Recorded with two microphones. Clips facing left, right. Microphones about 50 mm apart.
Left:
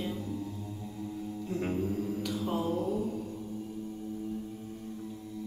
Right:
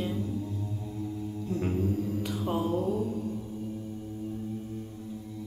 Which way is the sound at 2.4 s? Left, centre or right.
Centre.